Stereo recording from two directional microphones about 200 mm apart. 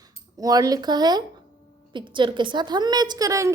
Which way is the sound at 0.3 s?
20° right (ahead or behind).